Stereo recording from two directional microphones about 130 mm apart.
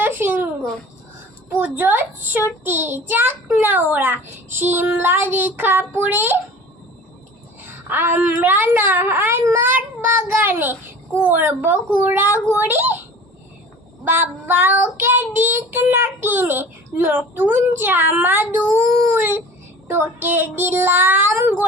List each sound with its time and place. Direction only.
0.0 s a sound: 15° right (ahead or behind)
1.5 s child singing: 15° right (ahead or behind)
7.9 s child singing: 15° right (ahead or behind)